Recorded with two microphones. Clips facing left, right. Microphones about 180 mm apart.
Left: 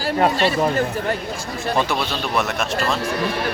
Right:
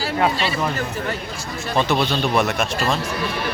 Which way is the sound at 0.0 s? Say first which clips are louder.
Left 3 dB; 45° left (ahead or behind).